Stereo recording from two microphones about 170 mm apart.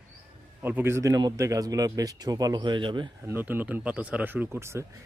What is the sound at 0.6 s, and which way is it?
A man's voice, 10° right (ahead or behind).